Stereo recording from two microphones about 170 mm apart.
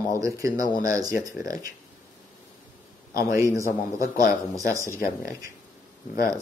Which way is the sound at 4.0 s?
60° left (ahead or behind).